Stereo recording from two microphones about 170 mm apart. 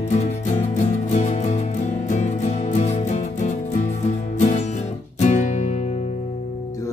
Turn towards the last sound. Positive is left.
turn(degrees=40)  # may be behind; listen again after turning